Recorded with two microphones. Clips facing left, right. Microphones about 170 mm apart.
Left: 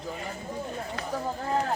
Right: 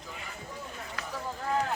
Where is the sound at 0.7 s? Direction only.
35° left (ahead or behind).